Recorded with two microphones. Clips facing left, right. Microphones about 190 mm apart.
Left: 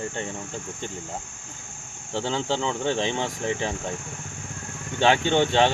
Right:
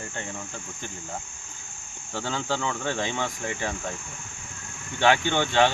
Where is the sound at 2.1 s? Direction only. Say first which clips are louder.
Left 3 dB; 25° left (ahead or behind).